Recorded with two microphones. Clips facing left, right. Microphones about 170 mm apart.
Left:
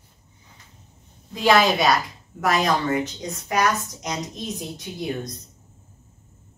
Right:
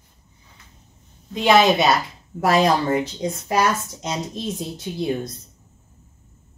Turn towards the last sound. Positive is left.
turn(degrees=-30)  # may be behind; listen again after turning